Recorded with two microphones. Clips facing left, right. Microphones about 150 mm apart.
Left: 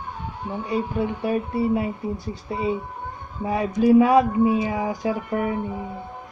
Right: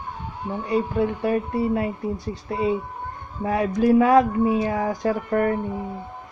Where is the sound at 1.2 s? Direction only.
5° left (ahead or behind).